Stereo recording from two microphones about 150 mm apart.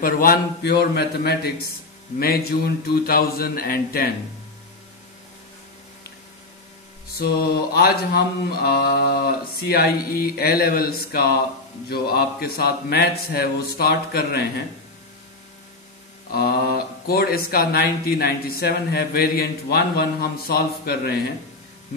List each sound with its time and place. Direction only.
0.0 s speech: 75° left (ahead or behind); by 1.7 s 90° left
2.1 s a sound: 90° left
7.2 s speech: 90° left
16.3 s speech: 90° left